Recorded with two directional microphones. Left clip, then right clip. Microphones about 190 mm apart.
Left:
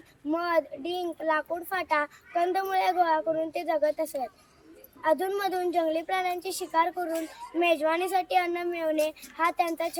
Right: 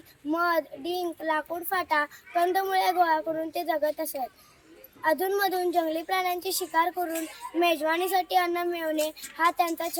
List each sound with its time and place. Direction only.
0.3 s a child's voice: 15° left (ahead or behind)